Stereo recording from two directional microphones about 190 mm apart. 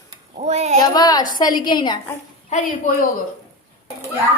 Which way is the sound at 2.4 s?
40° left (ahead or behind).